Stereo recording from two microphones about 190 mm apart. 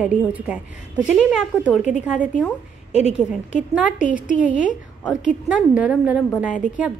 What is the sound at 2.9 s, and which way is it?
A woman's voice, 35° left (ahead or behind).